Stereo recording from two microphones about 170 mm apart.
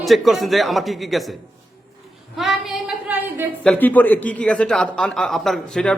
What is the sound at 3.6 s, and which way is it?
A man's voice, 5° left (ahead or behind).